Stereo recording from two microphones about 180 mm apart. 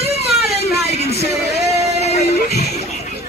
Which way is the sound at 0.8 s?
35° left (ahead or behind).